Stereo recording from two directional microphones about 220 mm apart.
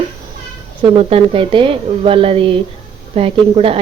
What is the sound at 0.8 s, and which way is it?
Speech, 25° right (ahead or behind).